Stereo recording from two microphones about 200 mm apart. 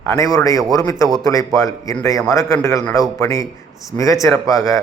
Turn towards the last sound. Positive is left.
turn(degrees=15)  # may be behind; listen again after turning